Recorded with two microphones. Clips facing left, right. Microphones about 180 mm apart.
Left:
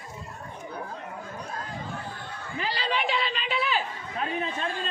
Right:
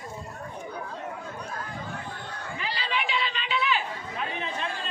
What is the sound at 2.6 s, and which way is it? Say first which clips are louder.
Chatter: left 4 dB; 35° left (ahead or behind).